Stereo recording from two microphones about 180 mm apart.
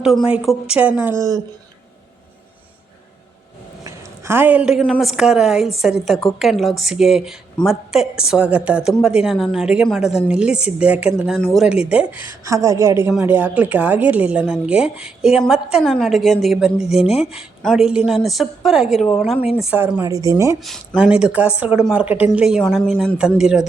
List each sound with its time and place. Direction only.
0.0 s a woman's voice: centre (ahead or behind)
3.8 s a woman's voice: 15° right (ahead or behind)
12.2 s a woman's voice: 15° right (ahead or behind)
17.0 s speech: 35° left (ahead or behind)
17.3 s a woman's voice: centre (ahead or behind); by 20.6 s 15° right (ahead or behind)
20.7 s a woman's voice: 5° right (ahead or behind)